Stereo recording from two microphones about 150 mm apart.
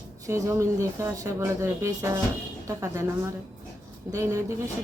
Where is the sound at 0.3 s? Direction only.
20° right (ahead or behind).